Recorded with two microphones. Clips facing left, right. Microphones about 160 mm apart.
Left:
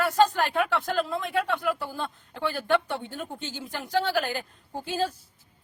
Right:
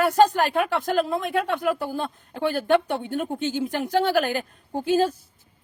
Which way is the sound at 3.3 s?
20° right (ahead or behind).